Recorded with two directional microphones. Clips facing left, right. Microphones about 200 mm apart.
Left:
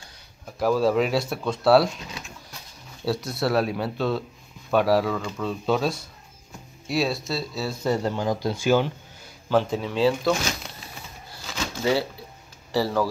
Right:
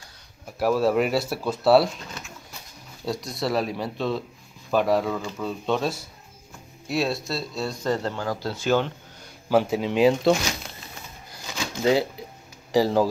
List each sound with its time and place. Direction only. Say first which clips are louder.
0.6 s speech: even; centre (ahead or behind)
3.1 s speech: left 2 dB; centre (ahead or behind)
9.5 s speech: right 2 dB; 10° right (ahead or behind)
11.4 s shuffling cards: right 2 dB; 15° right (ahead or behind)
12.7 s speech: right 3 dB; 15° right (ahead or behind)